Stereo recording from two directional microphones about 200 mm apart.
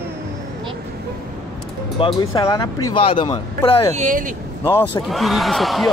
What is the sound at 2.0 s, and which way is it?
Speech, 20° left (ahead or behind).